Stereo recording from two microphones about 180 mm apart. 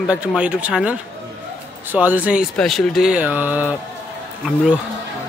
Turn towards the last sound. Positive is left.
turn(degrees=-5)  # may be behind; listen again after turning